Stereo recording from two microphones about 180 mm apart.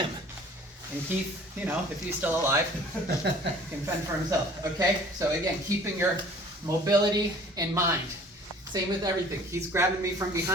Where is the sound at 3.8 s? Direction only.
20° right (ahead or behind).